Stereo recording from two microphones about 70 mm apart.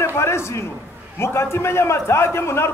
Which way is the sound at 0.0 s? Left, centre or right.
Left.